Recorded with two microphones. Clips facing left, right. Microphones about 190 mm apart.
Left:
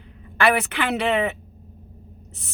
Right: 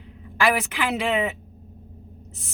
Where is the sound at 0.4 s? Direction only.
60° left (ahead or behind).